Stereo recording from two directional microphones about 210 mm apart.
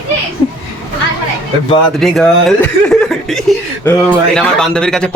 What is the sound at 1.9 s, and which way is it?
A man's voice, centre (ahead or behind).